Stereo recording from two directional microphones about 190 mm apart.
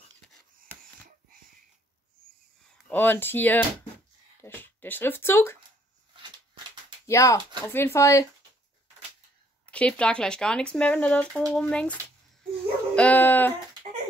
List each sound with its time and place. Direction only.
2.9 s speech: 10° left (ahead or behind)
7.1 s speech: 15° left (ahead or behind)
9.7 s speech: 5° left (ahead or behind)
12.9 s speech: 10° left (ahead or behind)